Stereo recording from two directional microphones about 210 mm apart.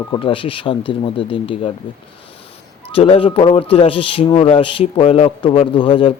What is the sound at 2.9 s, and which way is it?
A man's voice, 25° left (ahead or behind).